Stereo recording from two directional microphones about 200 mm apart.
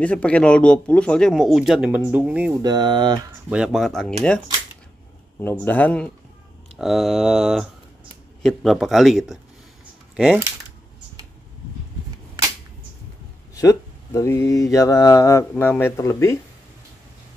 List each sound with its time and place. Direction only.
0.0 s speech: 5° left (ahead or behind)
2.6 s speech: 20° right (ahead or behind)
3.4 s speech: 5° right (ahead or behind)
5.4 s mantra: 10° left (ahead or behind)
6.8 s speech: centre (ahead or behind)
13.6 s mantra: 15° left (ahead or behind)